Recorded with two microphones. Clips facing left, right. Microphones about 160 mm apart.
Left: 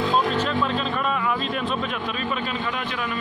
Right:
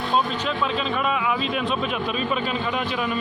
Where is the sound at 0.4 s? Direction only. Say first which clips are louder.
Left 1 dB; 5° right (ahead or behind).